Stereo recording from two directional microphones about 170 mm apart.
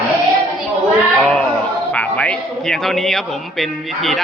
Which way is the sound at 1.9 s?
10° left (ahead or behind).